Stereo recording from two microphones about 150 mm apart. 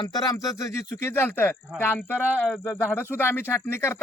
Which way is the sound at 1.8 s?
15° left (ahead or behind).